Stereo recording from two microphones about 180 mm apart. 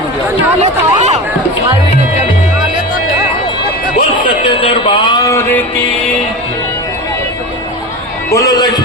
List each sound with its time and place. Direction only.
0.6 s chatter: 40° right (ahead or behind)
4.4 s music: 30° left (ahead or behind); by 5.6 s 10° left (ahead or behind)
8.3 s a man's voice: 20° left (ahead or behind)